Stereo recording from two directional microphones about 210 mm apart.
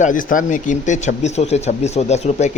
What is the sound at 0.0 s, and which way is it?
Speech, 40° left (ahead or behind).